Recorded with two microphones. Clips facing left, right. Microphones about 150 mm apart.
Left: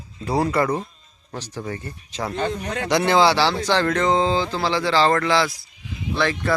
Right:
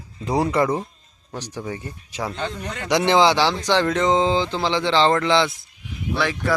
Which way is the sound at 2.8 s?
15° right (ahead or behind).